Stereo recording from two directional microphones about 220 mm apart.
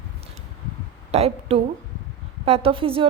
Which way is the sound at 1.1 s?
25° right (ahead or behind).